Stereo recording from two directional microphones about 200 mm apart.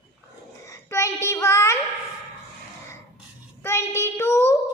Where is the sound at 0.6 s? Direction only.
15° left (ahead or behind).